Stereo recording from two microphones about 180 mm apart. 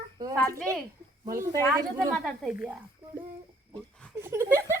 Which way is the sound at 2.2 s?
Centre (ahead or behind).